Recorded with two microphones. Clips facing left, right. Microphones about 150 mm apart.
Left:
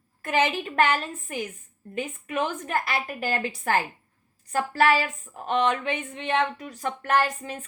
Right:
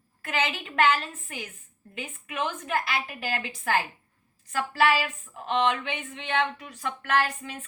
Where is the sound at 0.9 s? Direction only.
45° left (ahead or behind).